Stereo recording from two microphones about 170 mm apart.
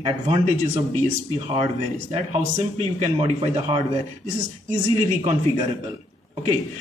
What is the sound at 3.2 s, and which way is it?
Speech, 35° right (ahead or behind).